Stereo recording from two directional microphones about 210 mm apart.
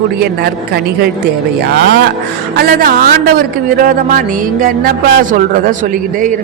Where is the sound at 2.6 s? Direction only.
45° right (ahead or behind).